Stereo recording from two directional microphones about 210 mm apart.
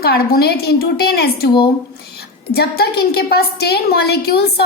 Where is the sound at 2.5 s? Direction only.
50° left (ahead or behind).